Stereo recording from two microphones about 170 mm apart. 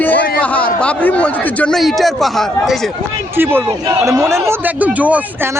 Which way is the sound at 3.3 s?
15° right (ahead or behind).